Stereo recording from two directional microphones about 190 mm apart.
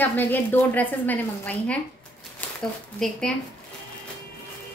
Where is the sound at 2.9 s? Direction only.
5° left (ahead or behind).